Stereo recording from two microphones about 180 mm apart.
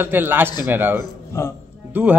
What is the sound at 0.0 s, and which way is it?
A man's voice, 10° right (ahead or behind).